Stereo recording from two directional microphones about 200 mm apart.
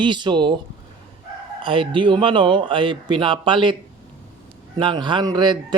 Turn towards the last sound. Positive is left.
turn(degrees=-20)  # may be behind; listen again after turning